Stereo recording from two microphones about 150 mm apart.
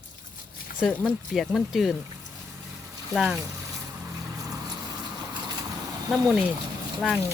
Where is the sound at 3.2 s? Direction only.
5° right (ahead or behind).